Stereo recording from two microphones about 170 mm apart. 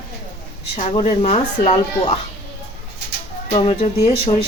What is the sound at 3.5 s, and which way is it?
Speech, 35° left (ahead or behind).